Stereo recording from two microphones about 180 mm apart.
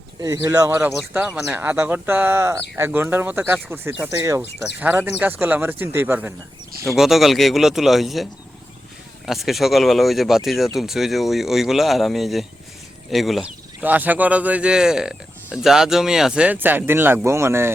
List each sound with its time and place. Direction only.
0.2 s speech: 15° right (ahead or behind)